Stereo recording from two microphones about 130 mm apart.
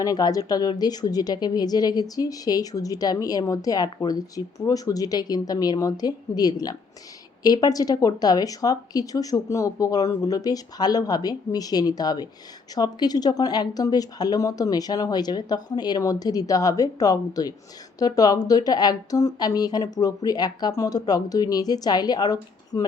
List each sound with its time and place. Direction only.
0.0 s a woman's voice: 30° left (ahead or behind)